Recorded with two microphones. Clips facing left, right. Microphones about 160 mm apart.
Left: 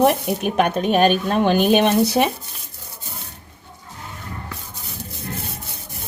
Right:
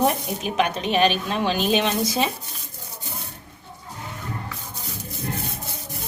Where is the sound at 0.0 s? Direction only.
60° left (ahead or behind).